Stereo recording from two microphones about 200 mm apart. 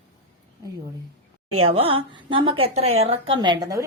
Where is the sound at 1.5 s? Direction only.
30° right (ahead or behind).